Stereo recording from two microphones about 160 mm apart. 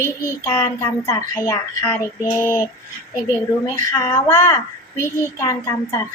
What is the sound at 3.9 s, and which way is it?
A child's voice, 15° left (ahead or behind).